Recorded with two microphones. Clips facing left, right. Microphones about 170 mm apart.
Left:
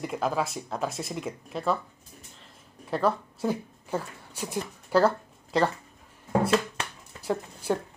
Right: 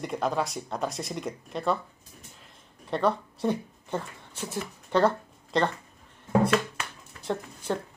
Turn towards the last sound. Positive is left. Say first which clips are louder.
# left 2 dB
turn(degrees=10)  # may be behind; listen again after turning